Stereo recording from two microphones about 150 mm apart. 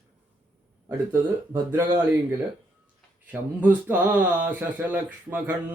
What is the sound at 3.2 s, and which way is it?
Speech, 10° right (ahead or behind).